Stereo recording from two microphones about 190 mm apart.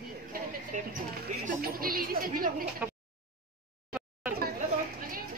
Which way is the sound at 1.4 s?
50° right (ahead or behind).